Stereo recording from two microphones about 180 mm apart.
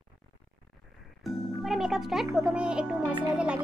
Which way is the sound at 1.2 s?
Centre (ahead or behind).